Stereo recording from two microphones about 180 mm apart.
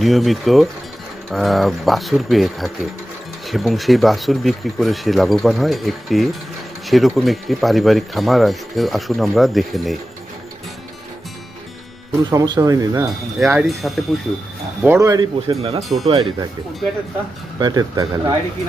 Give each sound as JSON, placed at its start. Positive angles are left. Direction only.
{"t": 0.0, "sound": "speech", "side_deg": 0}
{"t": 12.3, "sound": "speech", "side_deg": -20}
{"t": 13.5, "sound": "speech", "side_deg": -5}
{"t": 14.8, "sound": "speech", "side_deg": -15}
{"t": 15.8, "sound": "speech", "side_deg": 0}
{"t": 16.0, "sound": "speech", "side_deg": -30}
{"t": 17.6, "sound": "speech", "side_deg": -25}